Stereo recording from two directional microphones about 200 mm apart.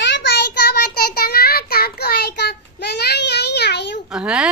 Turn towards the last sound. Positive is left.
turn(degrees=-5)  # may be behind; listen again after turning